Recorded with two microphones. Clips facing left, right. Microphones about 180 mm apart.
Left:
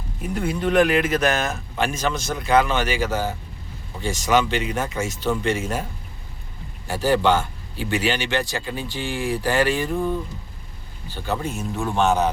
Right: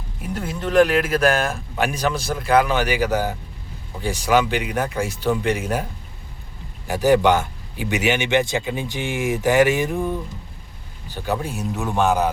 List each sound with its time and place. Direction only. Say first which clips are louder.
0.2 s speech: left 3 dB; centre (ahead or behind)
6.8 s speech: right 3 dB; 15° right (ahead or behind)